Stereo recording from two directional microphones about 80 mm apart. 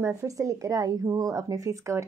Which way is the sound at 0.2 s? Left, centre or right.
Right.